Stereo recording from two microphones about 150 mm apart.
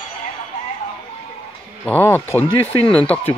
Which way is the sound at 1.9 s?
15° left (ahead or behind).